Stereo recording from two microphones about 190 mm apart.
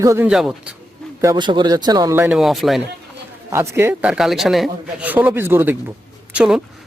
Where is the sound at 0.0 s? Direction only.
15° right (ahead or behind).